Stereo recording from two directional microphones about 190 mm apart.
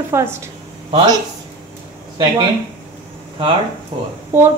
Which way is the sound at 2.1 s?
20° right (ahead or behind).